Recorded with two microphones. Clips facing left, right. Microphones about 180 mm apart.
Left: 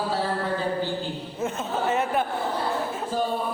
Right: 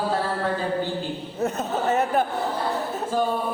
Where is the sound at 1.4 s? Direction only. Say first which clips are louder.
Right 2 dB; 40° right (ahead or behind).